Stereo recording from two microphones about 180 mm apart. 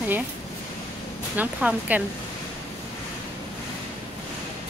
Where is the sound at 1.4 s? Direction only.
10° right (ahead or behind).